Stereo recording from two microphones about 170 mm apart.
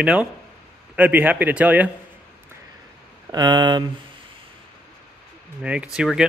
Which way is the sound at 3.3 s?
25° right (ahead or behind).